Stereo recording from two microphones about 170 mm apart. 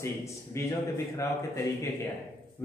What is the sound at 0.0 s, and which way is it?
A man's voice, 15° left (ahead or behind).